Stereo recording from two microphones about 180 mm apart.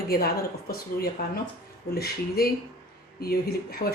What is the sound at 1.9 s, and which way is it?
Speech, 60° left (ahead or behind).